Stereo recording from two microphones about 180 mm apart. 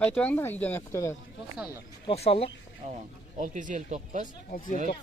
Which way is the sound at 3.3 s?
45° right (ahead or behind).